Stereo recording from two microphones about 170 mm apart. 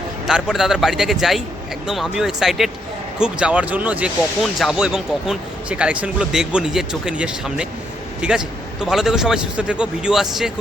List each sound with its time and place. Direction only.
0.3 s speech: 5° right (ahead or behind)